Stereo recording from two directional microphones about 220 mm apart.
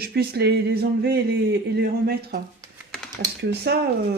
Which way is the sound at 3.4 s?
45° right (ahead or behind).